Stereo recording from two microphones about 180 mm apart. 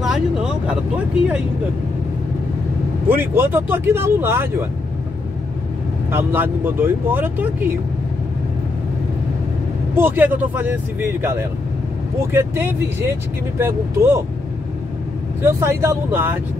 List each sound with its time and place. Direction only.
0.0 s speech: 5° right (ahead or behind)
3.1 s speech: 10° right (ahead or behind)
6.1 s speech: 10° right (ahead or behind)
9.9 s speech: 10° right (ahead or behind)
15.4 s speech: 15° right (ahead or behind)